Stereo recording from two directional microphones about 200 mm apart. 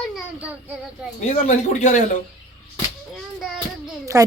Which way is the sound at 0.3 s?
5° right (ahead or behind).